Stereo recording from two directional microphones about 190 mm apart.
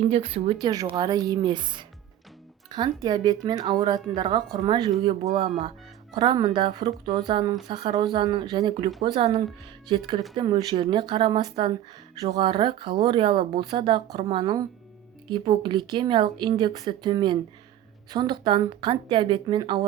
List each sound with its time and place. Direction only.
0.1 s speech: 35° right (ahead or behind)